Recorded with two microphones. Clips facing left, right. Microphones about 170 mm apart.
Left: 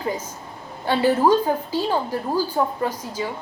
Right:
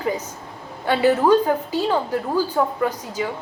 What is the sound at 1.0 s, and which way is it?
A woman's voice, 60° right (ahead or behind).